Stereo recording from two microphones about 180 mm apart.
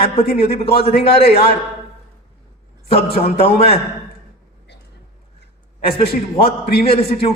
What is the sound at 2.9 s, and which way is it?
Speech, 35° left (ahead or behind).